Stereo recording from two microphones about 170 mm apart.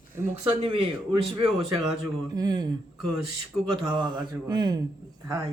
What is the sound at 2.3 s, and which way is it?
Mantra, 25° right (ahead or behind).